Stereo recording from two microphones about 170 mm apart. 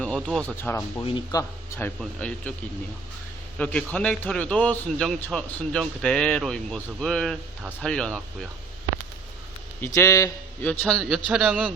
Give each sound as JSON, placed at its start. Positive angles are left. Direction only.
{"t": 0.0, "sound": "music", "side_deg": 5}
{"t": 0.5, "sound": "a man's voice", "side_deg": 10}
{"t": 1.0, "sound": "speech", "side_deg": 25}
{"t": 2.0, "sound": "a man's voice", "side_deg": 10}
{"t": 3.6, "sound": "a man's voice", "side_deg": 5}
{"t": 9.8, "sound": "a man's voice", "side_deg": 15}
{"t": 11.3, "sound": "a man's voice", "side_deg": -5}